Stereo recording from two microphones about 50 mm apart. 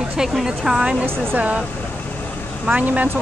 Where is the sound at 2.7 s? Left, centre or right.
Right.